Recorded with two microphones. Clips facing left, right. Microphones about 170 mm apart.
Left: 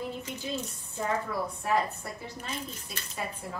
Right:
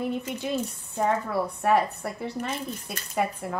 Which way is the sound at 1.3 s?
65° right (ahead or behind).